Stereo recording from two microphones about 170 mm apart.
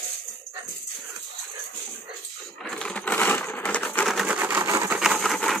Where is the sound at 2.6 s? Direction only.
5° left (ahead or behind); by 5.0 s 15° right (ahead or behind).